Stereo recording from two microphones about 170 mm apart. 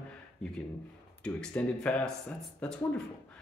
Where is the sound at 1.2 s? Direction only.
5° left (ahead or behind).